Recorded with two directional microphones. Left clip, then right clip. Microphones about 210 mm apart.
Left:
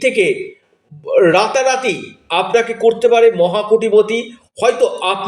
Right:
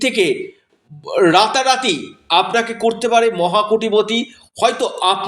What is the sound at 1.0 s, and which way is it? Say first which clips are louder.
Speech: left 1 dB; 40° right (ahead or behind).